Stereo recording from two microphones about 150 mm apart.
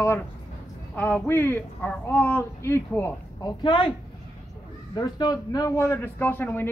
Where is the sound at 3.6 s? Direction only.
35° left (ahead or behind).